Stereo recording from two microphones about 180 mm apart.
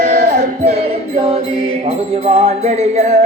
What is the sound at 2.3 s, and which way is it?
Music, 35° right (ahead or behind).